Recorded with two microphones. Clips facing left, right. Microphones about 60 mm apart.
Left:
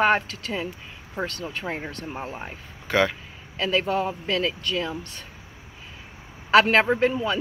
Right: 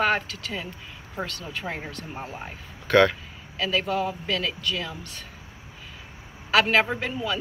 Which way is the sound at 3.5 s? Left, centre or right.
Left.